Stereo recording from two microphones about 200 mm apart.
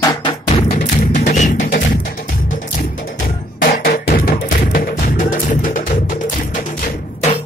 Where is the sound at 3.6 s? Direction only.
50° left (ahead or behind).